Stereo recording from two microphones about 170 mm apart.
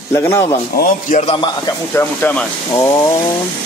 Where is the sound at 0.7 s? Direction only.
60° left (ahead or behind).